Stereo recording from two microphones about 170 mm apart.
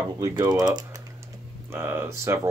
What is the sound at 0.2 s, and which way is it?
Speech, 20° right (ahead or behind).